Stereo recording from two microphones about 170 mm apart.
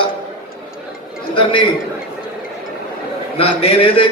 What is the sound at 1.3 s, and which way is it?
Speech, 30° left (ahead or behind).